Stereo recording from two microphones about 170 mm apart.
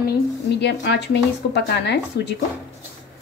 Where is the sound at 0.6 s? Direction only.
90° left.